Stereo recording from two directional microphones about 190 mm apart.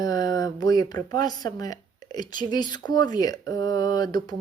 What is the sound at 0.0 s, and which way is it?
A woman's voice, 20° left (ahead or behind).